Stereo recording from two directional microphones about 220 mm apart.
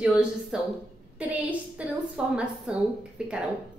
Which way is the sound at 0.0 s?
5° right (ahead or behind).